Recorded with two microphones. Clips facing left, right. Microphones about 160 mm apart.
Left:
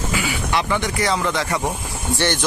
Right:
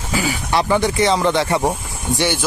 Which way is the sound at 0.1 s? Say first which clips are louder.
Right 5 dB; 40° right (ahead or behind).